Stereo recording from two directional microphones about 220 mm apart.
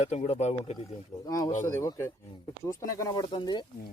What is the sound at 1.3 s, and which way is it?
Speech, 15° left (ahead or behind).